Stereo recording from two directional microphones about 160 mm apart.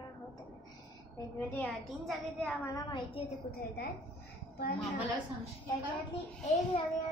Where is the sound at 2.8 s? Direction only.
30° left (ahead or behind).